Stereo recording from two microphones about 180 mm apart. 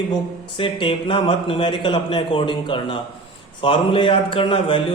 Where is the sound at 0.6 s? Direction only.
30° left (ahead or behind).